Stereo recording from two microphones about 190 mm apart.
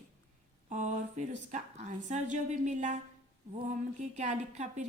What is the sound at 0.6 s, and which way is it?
A woman's voice, 40° right (ahead or behind).